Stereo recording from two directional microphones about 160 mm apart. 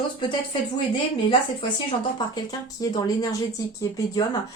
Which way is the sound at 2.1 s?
25° left (ahead or behind).